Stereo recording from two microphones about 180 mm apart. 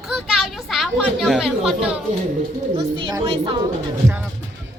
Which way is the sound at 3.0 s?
25° right (ahead or behind).